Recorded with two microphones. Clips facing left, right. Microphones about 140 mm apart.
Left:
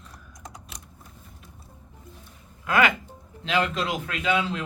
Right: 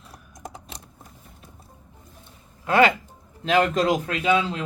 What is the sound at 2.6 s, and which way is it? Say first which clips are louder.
Speech: right 4 dB; 30° right (ahead or behind).